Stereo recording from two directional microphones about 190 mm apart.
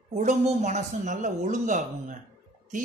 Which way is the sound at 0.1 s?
40° right (ahead or behind).